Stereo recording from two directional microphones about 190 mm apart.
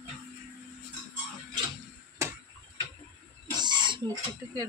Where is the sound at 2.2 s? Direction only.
15° right (ahead or behind).